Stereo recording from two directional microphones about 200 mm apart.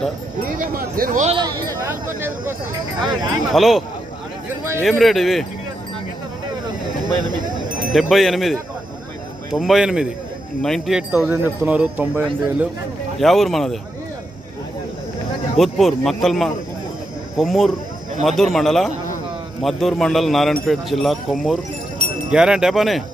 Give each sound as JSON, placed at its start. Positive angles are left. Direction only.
{"t": 0.5, "sound": "speech", "side_deg": -45}
{"t": 2.1, "sound": "speech", "side_deg": -10}
{"t": 3.0, "sound": "speech", "side_deg": -20}
{"t": 3.5, "sound": "a man's voice", "side_deg": 0}
{"t": 4.8, "sound": "a man's voice", "side_deg": 0}
{"t": 7.9, "sound": "a man's voice", "side_deg": 0}
{"t": 15.5, "sound": "a man's voice", "side_deg": 0}